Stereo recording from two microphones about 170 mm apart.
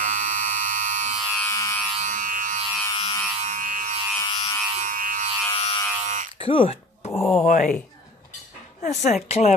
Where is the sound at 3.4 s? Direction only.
50° right (ahead or behind).